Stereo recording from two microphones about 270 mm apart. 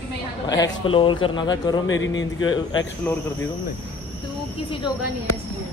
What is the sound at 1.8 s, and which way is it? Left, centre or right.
Speech, left.